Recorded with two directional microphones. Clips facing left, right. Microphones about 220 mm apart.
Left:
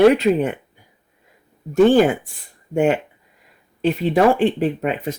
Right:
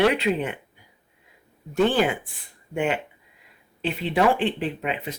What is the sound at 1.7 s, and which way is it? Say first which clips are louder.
Speech: left 8 dB; 45° left (ahead or behind).